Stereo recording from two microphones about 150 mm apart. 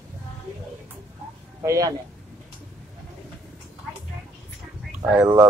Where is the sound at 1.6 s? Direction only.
20° right (ahead or behind).